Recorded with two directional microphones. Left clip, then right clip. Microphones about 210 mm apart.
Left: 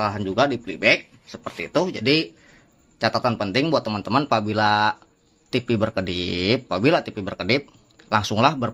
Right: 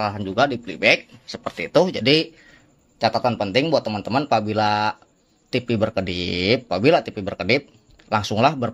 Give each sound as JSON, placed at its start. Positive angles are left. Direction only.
{"t": 0.0, "sound": "speech", "side_deg": 0}
{"t": 0.7, "sound": "speech", "side_deg": -10}
{"t": 3.0, "sound": "speech", "side_deg": 0}